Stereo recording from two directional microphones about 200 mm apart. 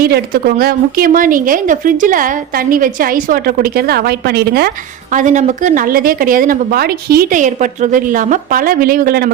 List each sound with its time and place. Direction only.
0.0 s a woman's voice: 50° right (ahead or behind)
5.1 s a woman's voice: 40° right (ahead or behind)